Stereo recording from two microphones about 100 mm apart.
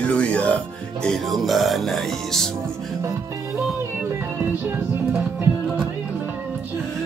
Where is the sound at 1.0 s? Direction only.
Centre (ahead or behind).